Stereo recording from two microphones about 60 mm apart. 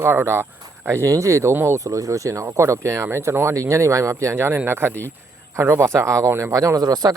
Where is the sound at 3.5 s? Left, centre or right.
Right.